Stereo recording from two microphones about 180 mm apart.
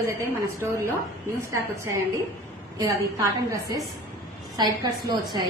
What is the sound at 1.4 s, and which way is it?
A woman's voice, 15° right (ahead or behind).